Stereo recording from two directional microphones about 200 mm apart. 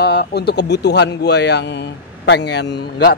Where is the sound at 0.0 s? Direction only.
55° left (ahead or behind).